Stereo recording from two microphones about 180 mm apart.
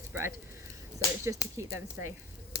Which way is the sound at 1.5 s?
15° right (ahead or behind).